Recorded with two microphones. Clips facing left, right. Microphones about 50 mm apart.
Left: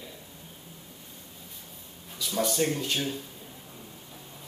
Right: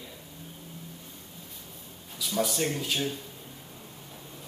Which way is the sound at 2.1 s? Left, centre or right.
Centre.